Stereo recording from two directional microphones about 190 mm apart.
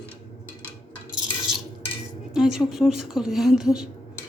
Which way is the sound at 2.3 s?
5° right (ahead or behind).